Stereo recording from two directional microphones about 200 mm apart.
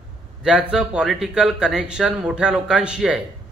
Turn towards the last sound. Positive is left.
turn(degrees=-5)  # may be behind; listen again after turning